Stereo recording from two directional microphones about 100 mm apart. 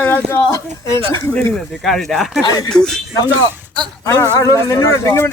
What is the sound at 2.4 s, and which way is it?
Speech, 40° left (ahead or behind).